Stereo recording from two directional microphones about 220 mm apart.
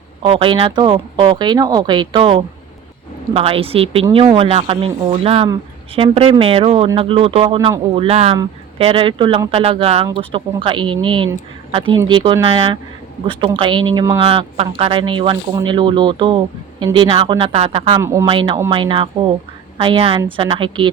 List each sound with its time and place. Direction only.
0.2 s speech: 25° right (ahead or behind)
18.0 s speech: 10° right (ahead or behind)
18.3 s speech: 20° right (ahead or behind)